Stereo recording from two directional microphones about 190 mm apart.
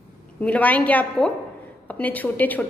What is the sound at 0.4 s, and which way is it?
A woman's voice, 5° left (ahead or behind).